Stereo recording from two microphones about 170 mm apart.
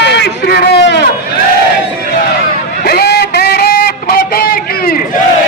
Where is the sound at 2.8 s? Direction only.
65° left (ahead or behind).